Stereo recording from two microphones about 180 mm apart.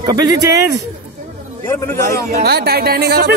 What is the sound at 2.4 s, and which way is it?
Speech, 60° right (ahead or behind).